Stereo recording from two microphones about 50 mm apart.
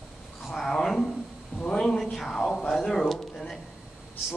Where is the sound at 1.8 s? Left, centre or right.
Centre.